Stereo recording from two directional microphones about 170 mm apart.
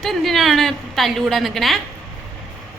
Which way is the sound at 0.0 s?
Centre (ahead or behind).